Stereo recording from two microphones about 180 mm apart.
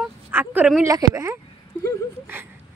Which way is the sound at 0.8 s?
15° right (ahead or behind).